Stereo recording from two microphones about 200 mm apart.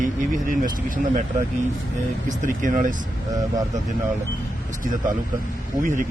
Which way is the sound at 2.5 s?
40° right (ahead or behind).